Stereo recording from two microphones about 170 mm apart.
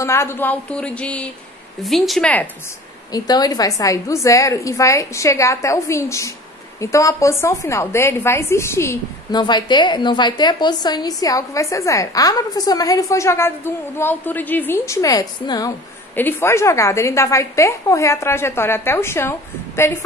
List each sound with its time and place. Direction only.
0.0 s a woman's voice: 15° left (ahead or behind)
3.1 s a woman's voice: 25° left (ahead or behind)